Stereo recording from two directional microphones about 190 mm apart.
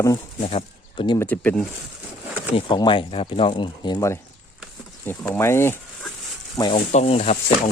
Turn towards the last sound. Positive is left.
turn(degrees=35)  # may be behind; listen again after turning